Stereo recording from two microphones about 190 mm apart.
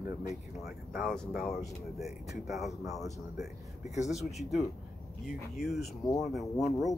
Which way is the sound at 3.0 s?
15° right (ahead or behind).